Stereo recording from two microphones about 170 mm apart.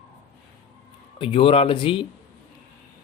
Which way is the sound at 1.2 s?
30° left (ahead or behind).